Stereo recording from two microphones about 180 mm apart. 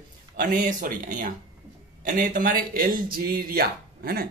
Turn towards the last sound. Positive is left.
turn(degrees=-55)  # may be behind; listen again after turning